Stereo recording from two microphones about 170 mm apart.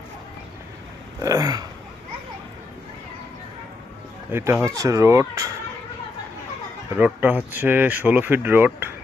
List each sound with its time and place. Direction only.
1.2 s a sound: 20° right (ahead or behind)
4.3 s speech: 15° right (ahead or behind)
6.9 s speech: 10° right (ahead or behind)